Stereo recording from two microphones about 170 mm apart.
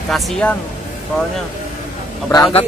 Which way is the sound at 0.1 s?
5° left (ahead or behind).